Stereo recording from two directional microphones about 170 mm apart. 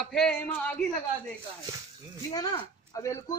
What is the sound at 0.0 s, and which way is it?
Speech, 5° left (ahead or behind).